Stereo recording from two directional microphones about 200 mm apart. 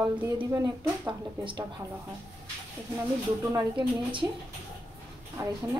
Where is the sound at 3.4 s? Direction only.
20° right (ahead or behind).